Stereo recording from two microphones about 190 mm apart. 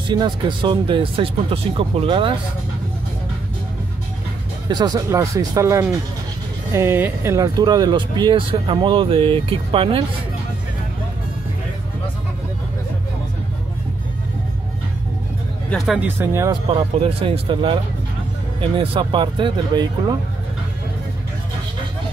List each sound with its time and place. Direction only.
0.1 s speech: 25° right (ahead or behind)
4.6 s speech: 20° right (ahead or behind)
15.7 s speech: centre (ahead or behind)
16.2 s speech: 15° right (ahead or behind)
17.0 s speech: 30° right (ahead or behind)